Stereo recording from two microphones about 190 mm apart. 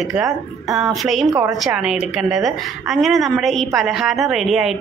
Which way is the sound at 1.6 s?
5° right (ahead or behind).